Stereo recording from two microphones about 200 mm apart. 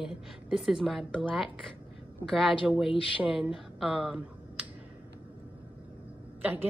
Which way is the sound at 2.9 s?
25° left (ahead or behind).